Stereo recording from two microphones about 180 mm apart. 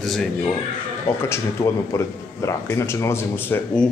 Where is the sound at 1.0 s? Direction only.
15° left (ahead or behind).